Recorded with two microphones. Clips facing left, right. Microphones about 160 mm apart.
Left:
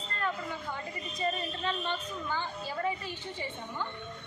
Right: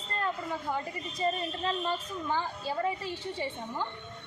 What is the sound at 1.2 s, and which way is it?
A woman's voice, 35° right (ahead or behind).